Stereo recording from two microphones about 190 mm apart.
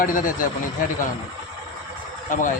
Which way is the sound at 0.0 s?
45° left (ahead or behind).